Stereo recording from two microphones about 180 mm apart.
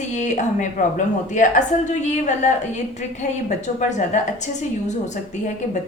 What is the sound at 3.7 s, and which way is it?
Speech, 40° left (ahead or behind).